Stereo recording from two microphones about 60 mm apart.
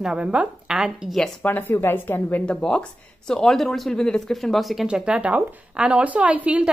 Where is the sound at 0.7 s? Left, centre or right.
Centre.